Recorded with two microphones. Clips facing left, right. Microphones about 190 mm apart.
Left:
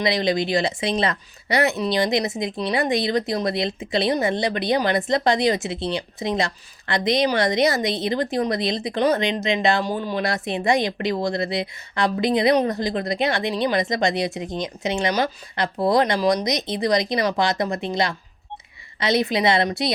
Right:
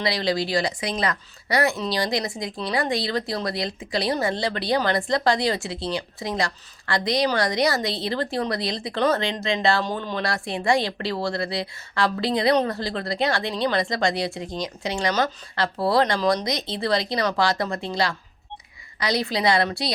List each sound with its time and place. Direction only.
0.0 s a woman's voice: 20° left (ahead or behind)